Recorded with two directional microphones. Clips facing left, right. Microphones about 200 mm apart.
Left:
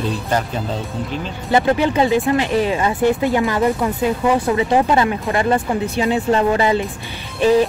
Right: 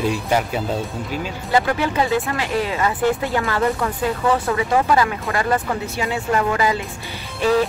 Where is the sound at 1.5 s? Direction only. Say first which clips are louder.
Left 4 dB; 25° left (ahead or behind).